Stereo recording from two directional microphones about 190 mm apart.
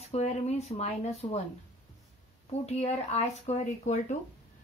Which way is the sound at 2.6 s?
35° left (ahead or behind).